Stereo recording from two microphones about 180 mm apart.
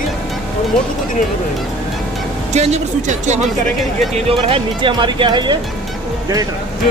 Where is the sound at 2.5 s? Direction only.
40° right (ahead or behind).